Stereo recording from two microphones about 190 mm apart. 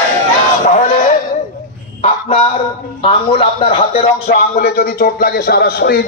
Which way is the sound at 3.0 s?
30° left (ahead or behind).